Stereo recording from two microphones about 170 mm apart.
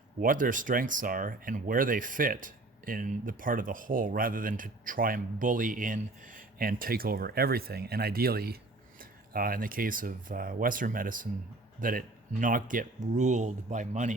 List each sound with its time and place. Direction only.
0.2 s speech: 50° right (ahead or behind)